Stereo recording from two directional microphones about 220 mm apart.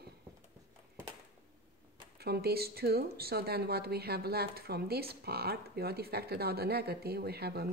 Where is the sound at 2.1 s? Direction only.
45° right (ahead or behind).